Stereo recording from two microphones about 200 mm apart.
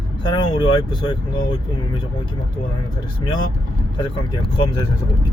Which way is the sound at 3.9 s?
20° left (ahead or behind).